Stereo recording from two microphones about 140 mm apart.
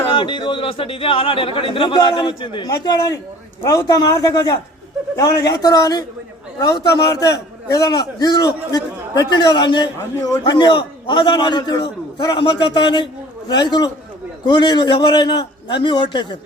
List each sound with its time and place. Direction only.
0.1 s a man's voice: 35° left (ahead or behind)